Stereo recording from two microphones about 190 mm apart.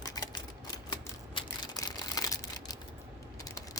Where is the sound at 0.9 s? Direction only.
20° left (ahead or behind).